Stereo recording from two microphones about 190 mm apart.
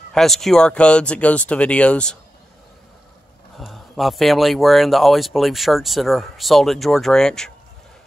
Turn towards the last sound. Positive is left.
turn(degrees=5)  # may be behind; listen again after turning